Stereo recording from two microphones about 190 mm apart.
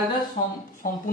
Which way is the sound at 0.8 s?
45° left (ahead or behind).